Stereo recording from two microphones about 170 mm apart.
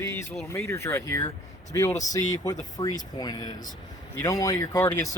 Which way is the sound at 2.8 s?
25° left (ahead or behind).